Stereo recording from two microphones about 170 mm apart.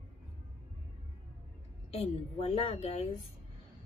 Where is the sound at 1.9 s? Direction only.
35° left (ahead or behind).